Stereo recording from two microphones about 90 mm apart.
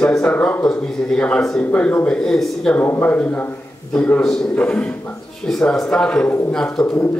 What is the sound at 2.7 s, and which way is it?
A man's voice, 20° left (ahead or behind).